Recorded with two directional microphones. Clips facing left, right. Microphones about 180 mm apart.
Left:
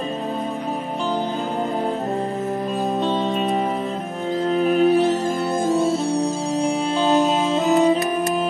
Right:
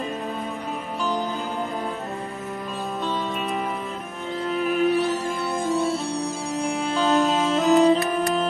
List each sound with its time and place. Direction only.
4.5 s music: 35° left (ahead or behind)
6.6 s music: 15° left (ahead or behind)